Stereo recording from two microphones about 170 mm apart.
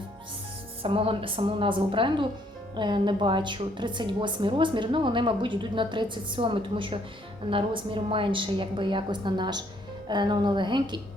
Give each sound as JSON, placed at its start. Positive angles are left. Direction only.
{"t": 0.8, "sound": "a woman's voice", "side_deg": -30}